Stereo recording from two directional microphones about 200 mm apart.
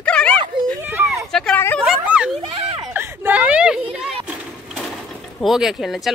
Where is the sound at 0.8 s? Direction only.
10° right (ahead or behind).